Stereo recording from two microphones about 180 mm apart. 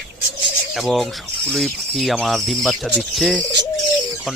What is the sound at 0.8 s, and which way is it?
Speech, centre (ahead or behind).